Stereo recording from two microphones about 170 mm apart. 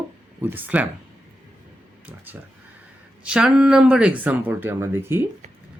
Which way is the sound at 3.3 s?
5° right (ahead or behind).